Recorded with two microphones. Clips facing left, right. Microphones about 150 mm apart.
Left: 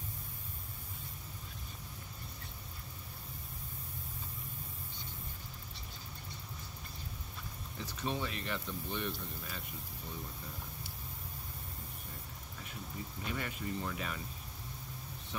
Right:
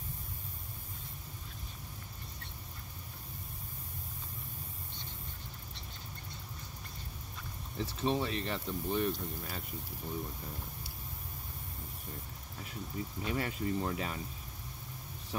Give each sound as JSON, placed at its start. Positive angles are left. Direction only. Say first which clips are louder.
{"t": 7.8, "sound": "speech", "louder": "right 5 dB", "side_deg": -30}
{"t": 13.2, "sound": "speech", "louder": "right 5 dB", "side_deg": -35}